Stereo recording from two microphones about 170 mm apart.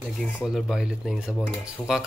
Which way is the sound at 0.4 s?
5° right (ahead or behind).